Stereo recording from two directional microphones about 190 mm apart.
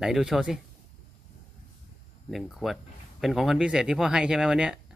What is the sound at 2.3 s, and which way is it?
Speech, centre (ahead or behind).